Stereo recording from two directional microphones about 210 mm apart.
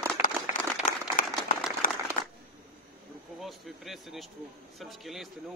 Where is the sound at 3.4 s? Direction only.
Centre (ahead or behind).